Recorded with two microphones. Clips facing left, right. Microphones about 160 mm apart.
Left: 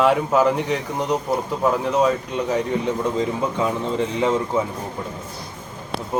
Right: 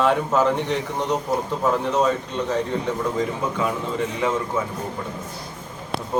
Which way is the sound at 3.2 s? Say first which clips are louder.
Left 2 dB; 25° left (ahead or behind).